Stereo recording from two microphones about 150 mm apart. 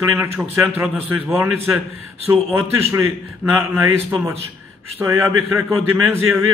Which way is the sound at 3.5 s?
15° right (ahead or behind).